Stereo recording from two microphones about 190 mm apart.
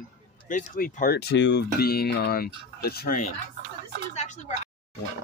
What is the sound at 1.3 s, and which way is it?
Speech, 70° left (ahead or behind).